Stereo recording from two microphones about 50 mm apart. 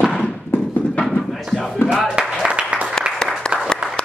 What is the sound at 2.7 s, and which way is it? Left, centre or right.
Applause, right.